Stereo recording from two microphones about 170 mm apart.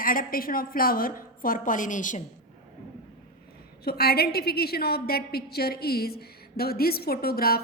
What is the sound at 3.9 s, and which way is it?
A woman's voice, 65° left (ahead or behind).